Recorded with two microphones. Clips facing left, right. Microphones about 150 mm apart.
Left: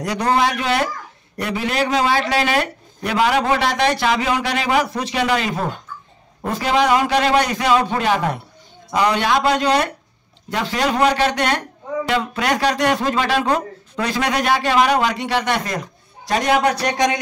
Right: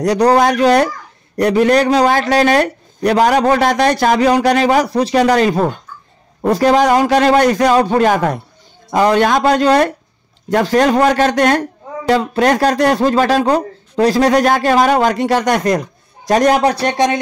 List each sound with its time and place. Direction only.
0.0 s a man's voice: 40° right (ahead or behind)